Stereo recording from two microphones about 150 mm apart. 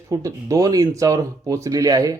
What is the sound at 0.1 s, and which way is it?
Speech, 20° right (ahead or behind).